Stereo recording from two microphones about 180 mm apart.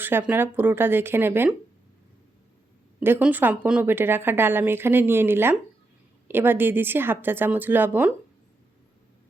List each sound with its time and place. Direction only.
0.0 s a woman's voice: 10° right (ahead or behind)
3.0 s a woman's voice: 10° right (ahead or behind)